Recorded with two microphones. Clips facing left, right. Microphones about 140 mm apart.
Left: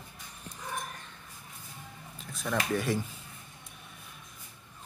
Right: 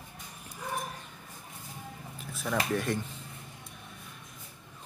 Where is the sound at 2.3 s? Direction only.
5° right (ahead or behind).